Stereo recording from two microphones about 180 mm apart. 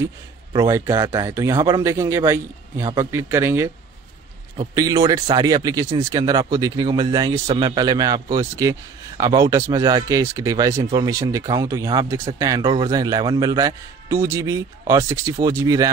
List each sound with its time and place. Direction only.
0.7 s speech: 15° right (ahead or behind)